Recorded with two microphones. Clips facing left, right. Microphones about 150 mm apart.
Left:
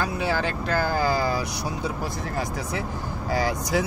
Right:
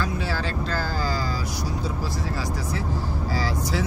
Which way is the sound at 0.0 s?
55° left (ahead or behind).